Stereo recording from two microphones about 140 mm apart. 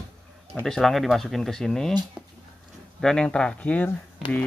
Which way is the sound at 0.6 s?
5° left (ahead or behind).